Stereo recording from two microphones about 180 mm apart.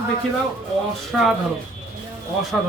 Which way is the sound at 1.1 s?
Centre (ahead or behind).